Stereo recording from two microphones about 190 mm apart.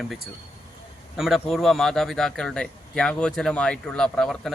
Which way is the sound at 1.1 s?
Centre (ahead or behind).